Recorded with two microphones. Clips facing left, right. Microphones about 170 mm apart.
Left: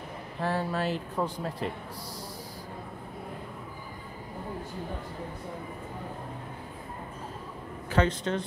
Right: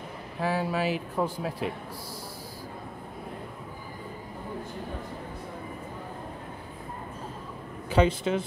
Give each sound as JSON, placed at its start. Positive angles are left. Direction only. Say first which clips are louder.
{"t": 0.4, "sound": "speech", "louder": "right 2 dB", "side_deg": -5}
{"t": 7.9, "sound": "speech", "louder": "right 3 dB", "side_deg": -10}